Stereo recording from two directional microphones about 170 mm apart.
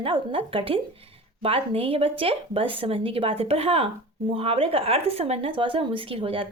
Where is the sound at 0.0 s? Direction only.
30° right (ahead or behind).